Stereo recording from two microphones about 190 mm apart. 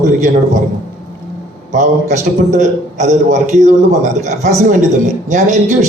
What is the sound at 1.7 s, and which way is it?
A man's voice, 40° right (ahead or behind).